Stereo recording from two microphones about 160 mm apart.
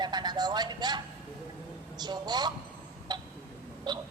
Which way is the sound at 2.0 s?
25° right (ahead or behind).